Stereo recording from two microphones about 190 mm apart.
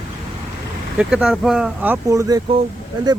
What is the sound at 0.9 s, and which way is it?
Speech, 5° right (ahead or behind).